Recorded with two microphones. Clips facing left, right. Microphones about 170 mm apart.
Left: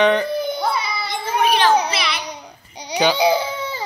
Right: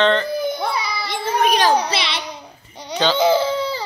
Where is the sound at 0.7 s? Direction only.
Centre (ahead or behind).